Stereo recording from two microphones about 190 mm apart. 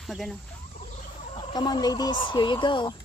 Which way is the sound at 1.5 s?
20° left (ahead or behind).